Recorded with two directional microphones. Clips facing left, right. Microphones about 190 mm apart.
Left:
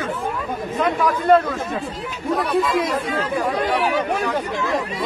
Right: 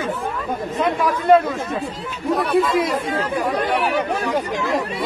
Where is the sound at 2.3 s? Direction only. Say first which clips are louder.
Right 2 dB; 5° right (ahead or behind).